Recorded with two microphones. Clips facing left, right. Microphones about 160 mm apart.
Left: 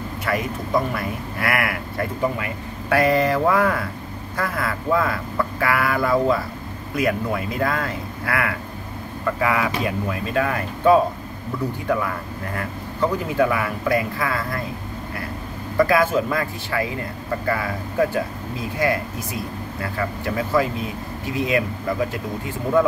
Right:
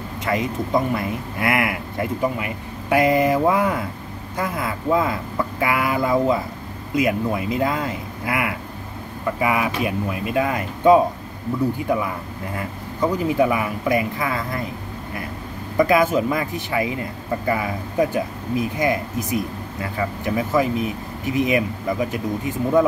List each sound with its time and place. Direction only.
0.2 s a man's voice: 20° right (ahead or behind)
12.5 s speech: 15° right (ahead or behind)
15.8 s speech: 15° right (ahead or behind)